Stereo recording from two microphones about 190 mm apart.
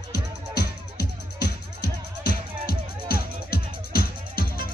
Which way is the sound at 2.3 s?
50° left (ahead or behind).